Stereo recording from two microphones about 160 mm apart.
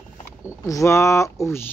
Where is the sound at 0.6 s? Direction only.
20° left (ahead or behind).